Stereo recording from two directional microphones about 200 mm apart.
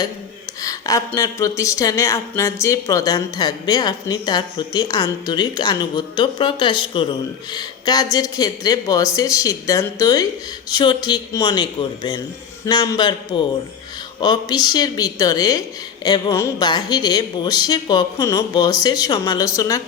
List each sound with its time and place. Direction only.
0.6 s speech: 15° left (ahead or behind)